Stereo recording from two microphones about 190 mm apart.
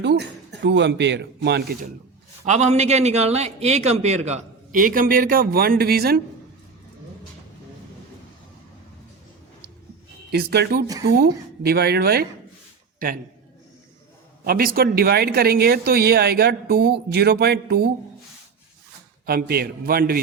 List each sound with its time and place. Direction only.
0.0 s speech: 65° right (ahead or behind)
2.4 s a man's voice: 35° right (ahead or behind); by 6.2 s 50° right (ahead or behind)
10.3 s speech: 55° right (ahead or behind)
14.4 s speech: 50° right (ahead or behind)
19.2 s a man's voice: 55° right (ahead or behind)